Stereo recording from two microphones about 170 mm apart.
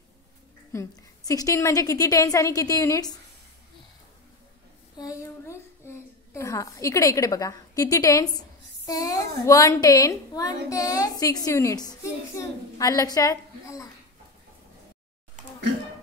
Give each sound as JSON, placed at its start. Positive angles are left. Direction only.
{"t": 0.7, "sound": "a woman's voice", "side_deg": 20}
{"t": 4.9, "sound": "a child's voice", "side_deg": 20}